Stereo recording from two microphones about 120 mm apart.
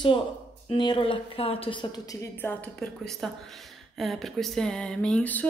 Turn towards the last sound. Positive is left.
turn(degrees=10)  # may be behind; listen again after turning